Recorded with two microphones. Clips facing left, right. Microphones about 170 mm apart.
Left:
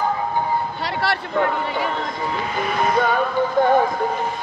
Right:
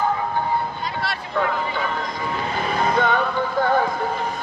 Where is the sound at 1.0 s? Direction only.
70° left (ahead or behind).